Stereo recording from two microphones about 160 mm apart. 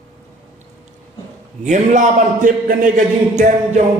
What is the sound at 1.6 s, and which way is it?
A man's voice, 50° right (ahead or behind).